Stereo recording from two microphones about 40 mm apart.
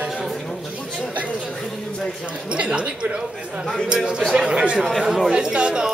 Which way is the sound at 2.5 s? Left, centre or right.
Right.